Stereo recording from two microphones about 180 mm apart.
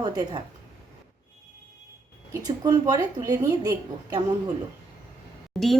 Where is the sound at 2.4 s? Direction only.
20° right (ahead or behind).